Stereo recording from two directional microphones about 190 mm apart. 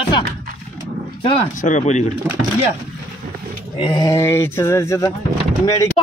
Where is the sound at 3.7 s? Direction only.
25° left (ahead or behind).